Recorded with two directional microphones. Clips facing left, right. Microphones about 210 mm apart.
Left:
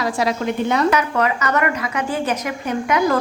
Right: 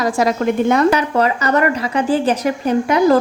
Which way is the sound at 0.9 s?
35° right (ahead or behind).